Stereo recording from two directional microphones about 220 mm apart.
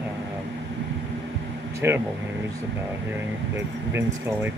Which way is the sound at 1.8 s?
10° right (ahead or behind).